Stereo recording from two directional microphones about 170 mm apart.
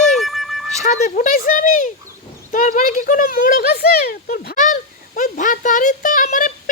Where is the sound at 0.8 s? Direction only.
45° left (ahead or behind).